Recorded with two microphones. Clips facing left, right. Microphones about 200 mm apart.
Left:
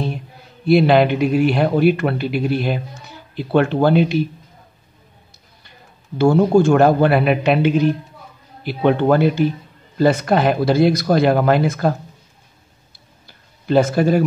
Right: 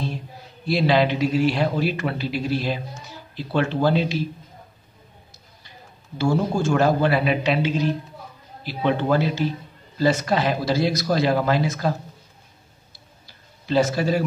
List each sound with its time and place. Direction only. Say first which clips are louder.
0.7 s a man's voice: left 6 dB; 55° left (ahead or behind)
6.1 s a man's voice: left 9 dB; 60° left (ahead or behind)
13.3 s a sound: left 6 dB; 55° left (ahead or behind)